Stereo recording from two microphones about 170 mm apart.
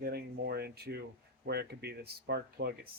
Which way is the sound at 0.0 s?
65° right (ahead or behind).